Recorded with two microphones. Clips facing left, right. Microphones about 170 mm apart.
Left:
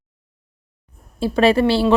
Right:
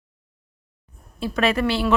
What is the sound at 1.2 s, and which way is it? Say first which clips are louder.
Speech: left 6 dB; 30° left (ahead or behind).